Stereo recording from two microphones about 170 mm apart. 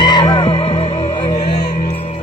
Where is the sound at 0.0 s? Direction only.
25° left (ahead or behind).